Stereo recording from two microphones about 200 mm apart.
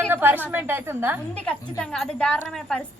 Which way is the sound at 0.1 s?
10° right (ahead or behind).